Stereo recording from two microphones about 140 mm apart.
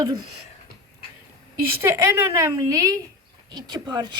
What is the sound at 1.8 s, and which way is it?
A child's voice, 20° right (ahead or behind).